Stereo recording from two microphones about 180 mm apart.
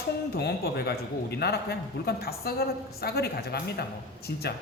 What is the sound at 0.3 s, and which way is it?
A woman's voice, 60° left (ahead or behind).